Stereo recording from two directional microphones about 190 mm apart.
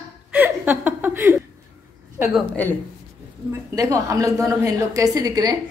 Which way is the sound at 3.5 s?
15° right (ahead or behind).